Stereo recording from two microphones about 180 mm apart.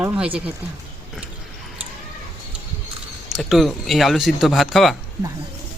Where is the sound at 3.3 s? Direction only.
Centre (ahead or behind).